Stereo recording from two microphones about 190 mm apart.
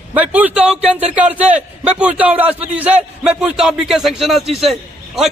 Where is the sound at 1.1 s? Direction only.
5° right (ahead or behind).